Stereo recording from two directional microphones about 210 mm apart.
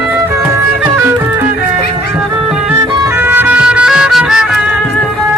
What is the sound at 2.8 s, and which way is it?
Music, 15° right (ahead or behind).